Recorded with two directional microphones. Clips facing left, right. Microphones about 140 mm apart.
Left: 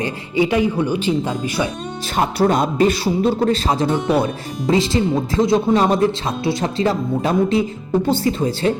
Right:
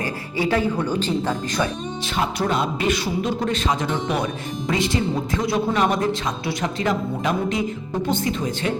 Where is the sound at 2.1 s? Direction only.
45° left (ahead or behind).